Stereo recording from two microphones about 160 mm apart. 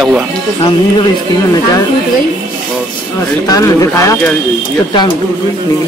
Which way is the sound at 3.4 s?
20° left (ahead or behind).